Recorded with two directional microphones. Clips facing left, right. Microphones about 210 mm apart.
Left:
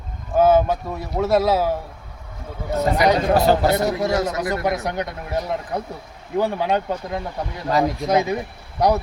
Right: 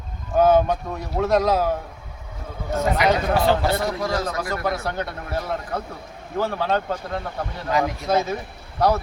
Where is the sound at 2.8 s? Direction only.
35° left (ahead or behind).